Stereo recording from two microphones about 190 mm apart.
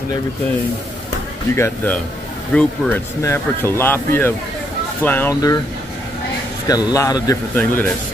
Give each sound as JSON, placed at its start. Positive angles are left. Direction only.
{"t": 1.5, "sound": "speech", "side_deg": 10}
{"t": 6.7, "sound": "a man's voice", "side_deg": 20}